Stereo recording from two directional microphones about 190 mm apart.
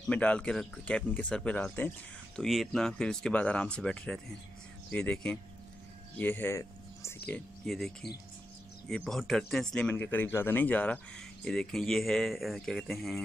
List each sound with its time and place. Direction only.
0.0 s speech: 5° left (ahead or behind)